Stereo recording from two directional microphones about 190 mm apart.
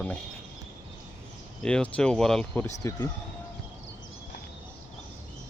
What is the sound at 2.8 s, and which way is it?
Speech, 15° left (ahead or behind).